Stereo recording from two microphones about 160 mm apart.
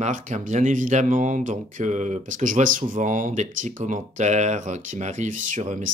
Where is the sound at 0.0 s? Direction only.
50° right (ahead or behind).